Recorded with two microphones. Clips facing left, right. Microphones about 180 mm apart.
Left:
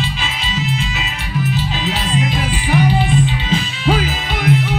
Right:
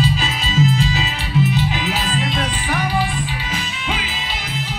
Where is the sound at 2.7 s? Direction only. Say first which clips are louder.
Left 7 dB; 20° left (ahead or behind).